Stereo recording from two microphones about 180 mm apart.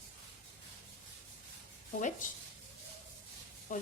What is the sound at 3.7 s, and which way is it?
Speech, 45° left (ahead or behind).